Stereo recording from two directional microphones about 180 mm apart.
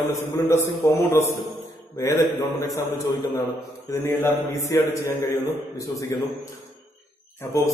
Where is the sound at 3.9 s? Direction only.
15° left (ahead or behind).